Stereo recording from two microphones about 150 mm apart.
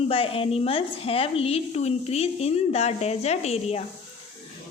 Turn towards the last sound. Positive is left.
turn(degrees=45)  # may be behind; listen again after turning